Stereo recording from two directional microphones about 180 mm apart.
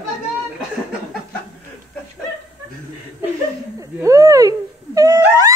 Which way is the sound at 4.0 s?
20° right (ahead or behind).